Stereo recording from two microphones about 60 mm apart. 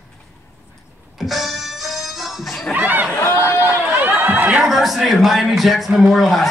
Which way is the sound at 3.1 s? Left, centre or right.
Left.